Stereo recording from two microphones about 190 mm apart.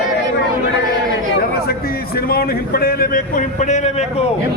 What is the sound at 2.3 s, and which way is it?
A man's voice, 55° left (ahead or behind).